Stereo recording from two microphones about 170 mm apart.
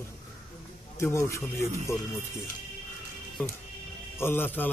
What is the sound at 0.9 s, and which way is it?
A man's voice, 15° left (ahead or behind).